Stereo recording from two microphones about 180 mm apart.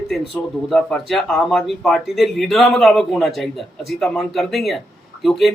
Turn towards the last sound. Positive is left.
turn(degrees=0)  # may be behind; listen again after turning